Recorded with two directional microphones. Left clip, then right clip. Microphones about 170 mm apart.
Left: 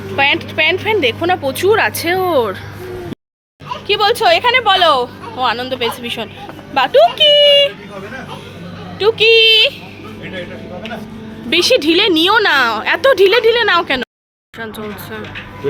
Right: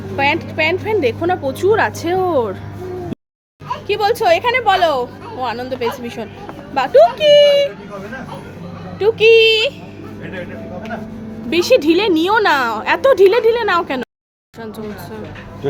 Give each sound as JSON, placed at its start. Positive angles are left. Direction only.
{"t": 0.2, "sound": "a woman's voice", "side_deg": -5}
{"t": 3.8, "sound": "speech", "side_deg": 0}
{"t": 9.0, "sound": "a woman's voice", "side_deg": -10}
{"t": 11.4, "sound": "a woman's voice", "side_deg": -5}